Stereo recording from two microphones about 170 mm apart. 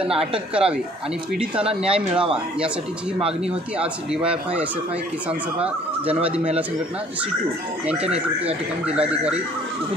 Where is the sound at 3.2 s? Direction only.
5° right (ahead or behind).